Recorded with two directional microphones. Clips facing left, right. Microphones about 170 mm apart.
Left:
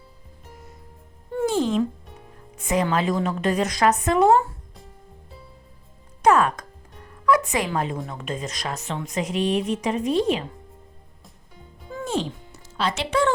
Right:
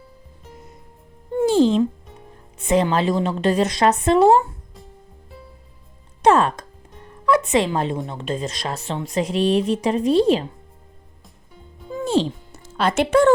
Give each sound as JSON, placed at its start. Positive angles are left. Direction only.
{"t": 1.5, "sound": "a woman's voice", "side_deg": -30}
{"t": 6.2, "sound": "music", "side_deg": -30}
{"t": 7.3, "sound": "a woman's voice", "side_deg": -25}
{"t": 12.0, "sound": "music", "side_deg": -30}
{"t": 12.5, "sound": "speech", "side_deg": -55}